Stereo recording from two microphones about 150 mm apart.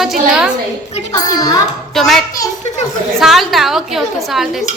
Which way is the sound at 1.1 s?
25° left (ahead or behind).